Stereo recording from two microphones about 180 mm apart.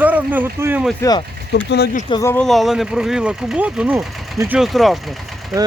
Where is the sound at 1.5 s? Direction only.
65° left (ahead or behind).